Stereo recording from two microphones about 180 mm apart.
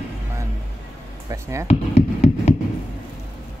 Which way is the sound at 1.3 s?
15° right (ahead or behind).